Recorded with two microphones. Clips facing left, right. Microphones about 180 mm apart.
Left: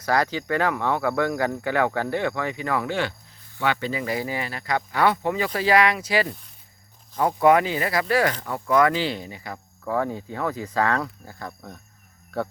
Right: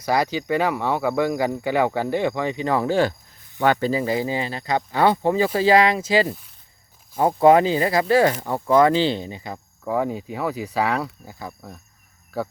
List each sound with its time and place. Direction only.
0.0 s speech: 10° right (ahead or behind); by 4.0 s 40° right (ahead or behind)
4.0 s speech: 25° right (ahead or behind); by 12.5 s centre (ahead or behind)